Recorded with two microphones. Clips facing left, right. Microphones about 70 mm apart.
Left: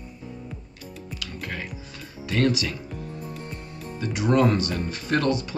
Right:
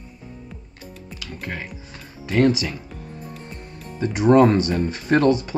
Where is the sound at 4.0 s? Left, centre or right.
Right.